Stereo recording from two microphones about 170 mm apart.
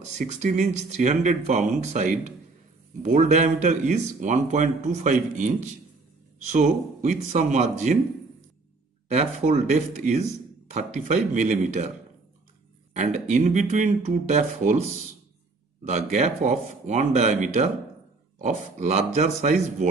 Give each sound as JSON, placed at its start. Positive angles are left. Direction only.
{"t": 0.1, "sound": "speech", "side_deg": -45}
{"t": 9.1, "sound": "speech", "side_deg": -40}
{"t": 12.9, "sound": "speech", "side_deg": -45}